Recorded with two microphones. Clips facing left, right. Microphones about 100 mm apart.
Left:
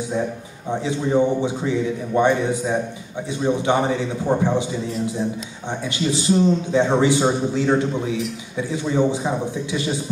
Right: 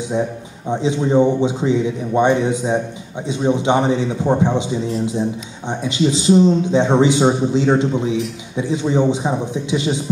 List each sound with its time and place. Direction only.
0.7 s a man's voice: 20° right (ahead or behind)